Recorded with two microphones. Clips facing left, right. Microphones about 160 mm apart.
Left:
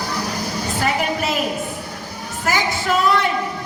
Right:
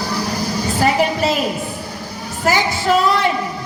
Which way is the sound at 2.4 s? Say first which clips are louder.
Right 4 dB; 35° right (ahead or behind).